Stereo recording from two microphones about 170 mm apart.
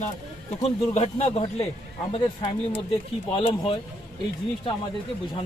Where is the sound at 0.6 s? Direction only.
40° left (ahead or behind).